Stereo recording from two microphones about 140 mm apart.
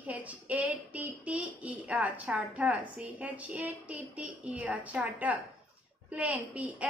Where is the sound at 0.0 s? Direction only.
10° right (ahead or behind).